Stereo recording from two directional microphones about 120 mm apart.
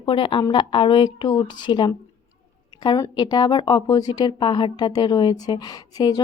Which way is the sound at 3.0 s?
35° left (ahead or behind).